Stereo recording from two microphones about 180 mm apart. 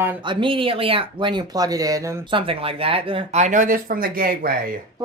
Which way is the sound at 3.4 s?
45° right (ahead or behind).